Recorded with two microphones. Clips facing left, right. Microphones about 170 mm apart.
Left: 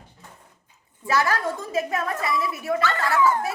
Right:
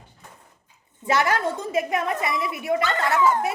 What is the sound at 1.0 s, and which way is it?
A woman's voice, 20° right (ahead or behind).